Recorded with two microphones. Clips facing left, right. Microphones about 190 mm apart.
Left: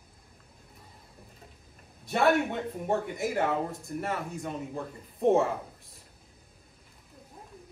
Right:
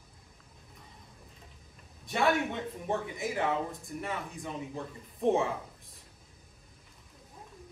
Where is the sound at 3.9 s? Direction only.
55° left (ahead or behind).